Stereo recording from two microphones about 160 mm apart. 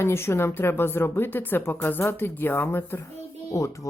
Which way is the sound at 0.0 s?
15° left (ahead or behind).